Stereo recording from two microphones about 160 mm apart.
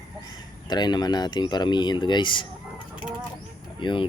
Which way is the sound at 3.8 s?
30° left (ahead or behind).